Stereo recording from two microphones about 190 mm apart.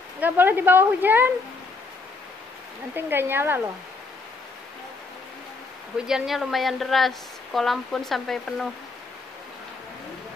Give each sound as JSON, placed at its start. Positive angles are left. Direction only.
{"t": 0.2, "sound": "a woman's voice", "side_deg": -10}
{"t": 2.9, "sound": "a woman's voice", "side_deg": -10}
{"t": 6.0, "sound": "a woman's voice", "side_deg": 0}